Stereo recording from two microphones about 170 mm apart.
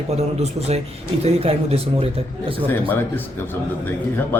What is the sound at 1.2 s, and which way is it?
Speech, 35° right (ahead or behind).